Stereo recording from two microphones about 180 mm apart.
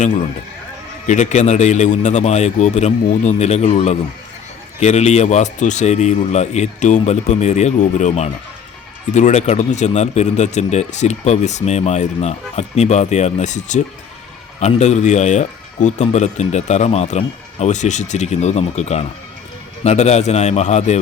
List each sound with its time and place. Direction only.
1.0 s speech: 40° left (ahead or behind)